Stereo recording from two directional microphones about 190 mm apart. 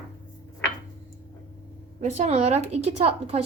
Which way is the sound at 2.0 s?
35° right (ahead or behind).